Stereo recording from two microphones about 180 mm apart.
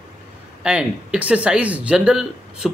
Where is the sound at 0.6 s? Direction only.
5° right (ahead or behind).